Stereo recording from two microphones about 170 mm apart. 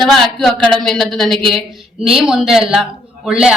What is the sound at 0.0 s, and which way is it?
Speech, centre (ahead or behind).